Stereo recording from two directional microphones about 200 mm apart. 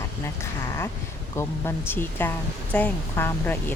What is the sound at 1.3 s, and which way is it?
Speech, 10° left (ahead or behind).